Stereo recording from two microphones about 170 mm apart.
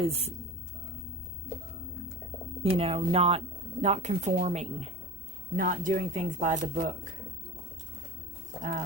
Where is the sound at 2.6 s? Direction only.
35° right (ahead or behind).